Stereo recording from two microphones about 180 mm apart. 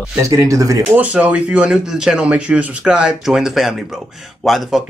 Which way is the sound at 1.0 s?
10° right (ahead or behind).